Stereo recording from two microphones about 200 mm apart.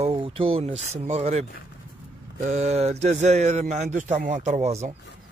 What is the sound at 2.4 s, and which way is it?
Speech, 35° right (ahead or behind).